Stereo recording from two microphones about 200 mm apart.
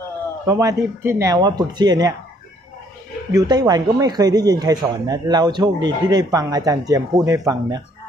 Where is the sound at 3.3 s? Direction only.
20° right (ahead or behind).